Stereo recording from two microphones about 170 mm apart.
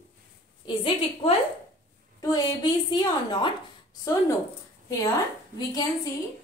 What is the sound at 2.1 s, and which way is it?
A woman's voice, 20° left (ahead or behind).